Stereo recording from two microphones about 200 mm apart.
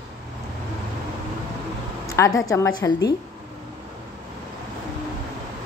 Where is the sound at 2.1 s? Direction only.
15° left (ahead or behind).